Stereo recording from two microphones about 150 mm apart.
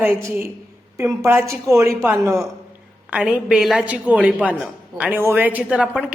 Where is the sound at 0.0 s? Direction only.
15° right (ahead or behind).